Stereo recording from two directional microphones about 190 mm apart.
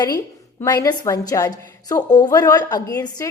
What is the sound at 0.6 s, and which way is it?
A woman's voice, 15° left (ahead or behind).